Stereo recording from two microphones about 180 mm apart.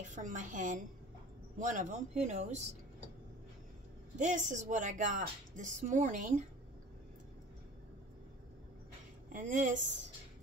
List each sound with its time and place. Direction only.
0.1 s speech: 45° right (ahead or behind)
4.2 s speech: 40° right (ahead or behind)
9.3 s speech: 45° right (ahead or behind)